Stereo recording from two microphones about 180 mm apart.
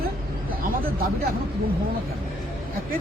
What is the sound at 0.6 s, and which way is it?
Speech, 55° right (ahead or behind).